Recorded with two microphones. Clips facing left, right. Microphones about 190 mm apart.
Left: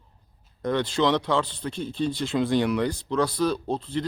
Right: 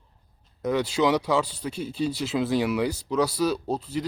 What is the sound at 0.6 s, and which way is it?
Speech, 5° right (ahead or behind).